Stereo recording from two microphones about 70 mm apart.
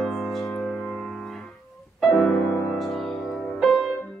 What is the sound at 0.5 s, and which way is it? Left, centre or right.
Music, centre.